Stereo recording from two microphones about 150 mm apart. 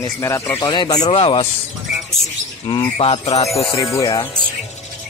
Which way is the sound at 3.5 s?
20° left (ahead or behind).